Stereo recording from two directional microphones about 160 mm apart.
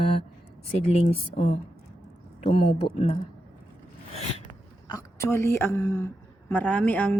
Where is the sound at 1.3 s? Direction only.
45° left (ahead or behind).